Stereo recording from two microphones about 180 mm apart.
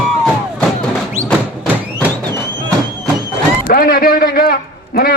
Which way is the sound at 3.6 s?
55° left (ahead or behind).